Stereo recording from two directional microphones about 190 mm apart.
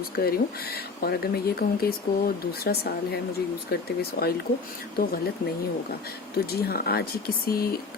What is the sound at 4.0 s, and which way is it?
Speech, 55° left (ahead or behind).